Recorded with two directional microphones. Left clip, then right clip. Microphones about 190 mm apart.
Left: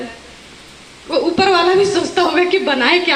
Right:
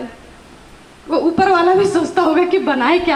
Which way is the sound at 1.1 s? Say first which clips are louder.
Even; 60° right (ahead or behind).